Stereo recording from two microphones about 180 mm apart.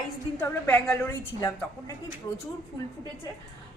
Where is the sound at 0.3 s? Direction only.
10° left (ahead or behind).